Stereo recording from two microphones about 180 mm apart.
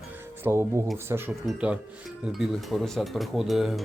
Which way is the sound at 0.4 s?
15° right (ahead or behind).